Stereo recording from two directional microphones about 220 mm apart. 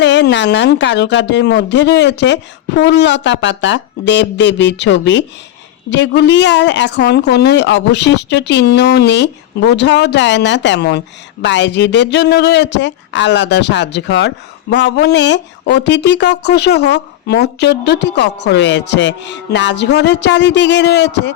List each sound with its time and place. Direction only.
0.0 s speech: 55° left (ahead or behind)